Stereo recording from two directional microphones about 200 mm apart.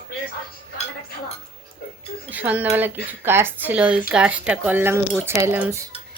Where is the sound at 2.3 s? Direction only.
10° right (ahead or behind).